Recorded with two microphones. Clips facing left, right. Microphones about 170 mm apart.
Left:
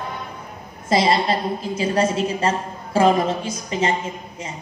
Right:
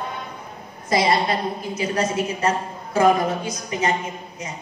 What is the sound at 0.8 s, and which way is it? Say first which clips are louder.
A woman's voice: left 2 dB; 25° left (ahead or behind).